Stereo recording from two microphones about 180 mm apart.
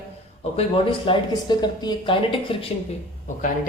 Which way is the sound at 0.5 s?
30° left (ahead or behind).